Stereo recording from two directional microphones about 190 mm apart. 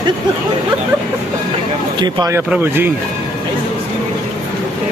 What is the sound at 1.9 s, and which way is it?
Speech, 25° right (ahead or behind).